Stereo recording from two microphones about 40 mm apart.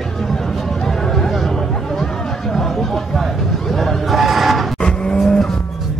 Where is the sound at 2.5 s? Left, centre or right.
Centre.